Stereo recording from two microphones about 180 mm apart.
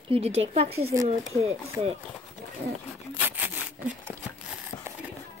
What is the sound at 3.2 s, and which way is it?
Sawing, 10° right (ahead or behind).